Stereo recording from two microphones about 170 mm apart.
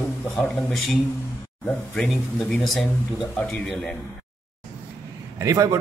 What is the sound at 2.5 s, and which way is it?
A man's voice, centre (ahead or behind).